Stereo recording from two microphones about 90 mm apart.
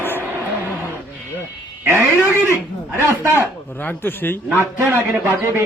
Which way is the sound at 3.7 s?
20° left (ahead or behind).